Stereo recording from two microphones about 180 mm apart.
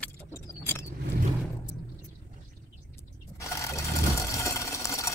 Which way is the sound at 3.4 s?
15° left (ahead or behind).